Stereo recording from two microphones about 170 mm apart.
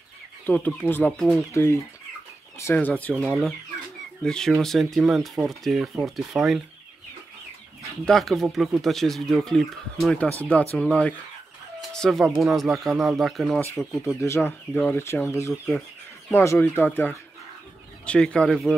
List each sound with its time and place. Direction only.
0.5 s speech: 10° left (ahead or behind)
8.0 s speech: centre (ahead or behind)
14.0 s speech: 15° left (ahead or behind)